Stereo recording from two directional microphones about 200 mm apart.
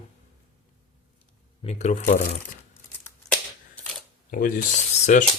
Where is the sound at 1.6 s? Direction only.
35° left (ahead or behind).